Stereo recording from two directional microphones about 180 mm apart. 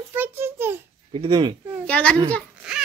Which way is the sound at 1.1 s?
30° right (ahead or behind).